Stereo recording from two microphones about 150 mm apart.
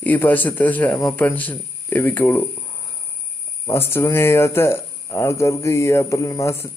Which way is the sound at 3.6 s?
15° left (ahead or behind).